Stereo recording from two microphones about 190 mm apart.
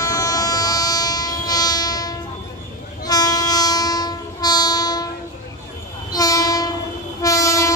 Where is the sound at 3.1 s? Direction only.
20° left (ahead or behind).